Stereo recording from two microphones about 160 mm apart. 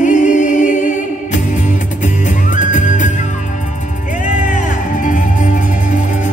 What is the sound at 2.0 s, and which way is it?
Music, 50° left (ahead or behind).